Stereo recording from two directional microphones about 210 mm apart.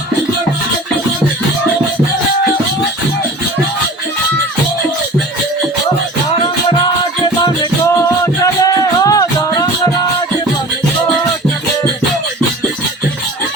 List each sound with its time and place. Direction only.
9.0 s music: 15° left (ahead or behind)